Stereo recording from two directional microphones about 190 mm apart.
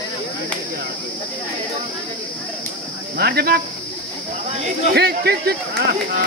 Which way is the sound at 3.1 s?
55° right (ahead or behind).